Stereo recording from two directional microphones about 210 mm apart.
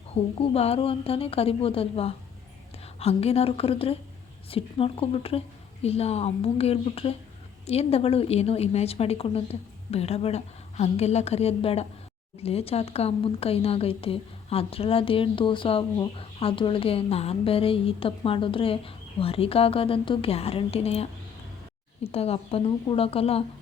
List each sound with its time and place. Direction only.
0.1 s a woman's voice: 30° left (ahead or behind)